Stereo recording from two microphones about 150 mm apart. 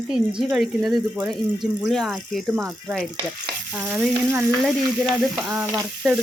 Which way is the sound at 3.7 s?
15° right (ahead or behind).